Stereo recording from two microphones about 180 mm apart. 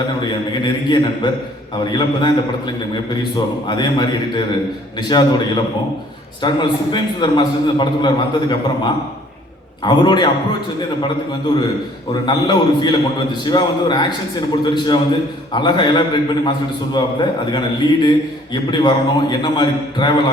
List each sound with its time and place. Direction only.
0.6 s a man's voice: 25° left (ahead or behind)
6.4 s a man's voice: 25° left (ahead or behind)
12.2 s a man's voice: 25° left (ahead or behind)